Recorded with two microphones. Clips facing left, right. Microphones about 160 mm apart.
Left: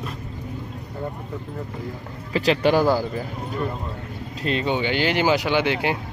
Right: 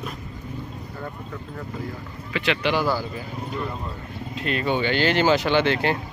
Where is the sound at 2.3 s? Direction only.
40° left (ahead or behind).